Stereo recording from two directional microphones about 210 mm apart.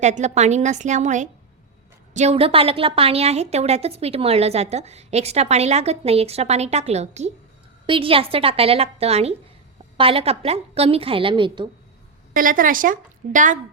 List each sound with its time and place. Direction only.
0.0 s a woman's voice: 35° right (ahead or behind)
12.3 s a woman's voice: 40° right (ahead or behind)